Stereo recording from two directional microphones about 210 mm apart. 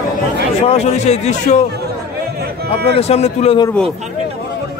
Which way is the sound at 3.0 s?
30° left (ahead or behind).